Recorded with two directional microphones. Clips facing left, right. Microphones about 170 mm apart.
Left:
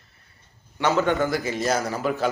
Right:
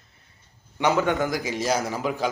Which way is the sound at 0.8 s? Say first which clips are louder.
Left 1 dB; 15° right (ahead or behind).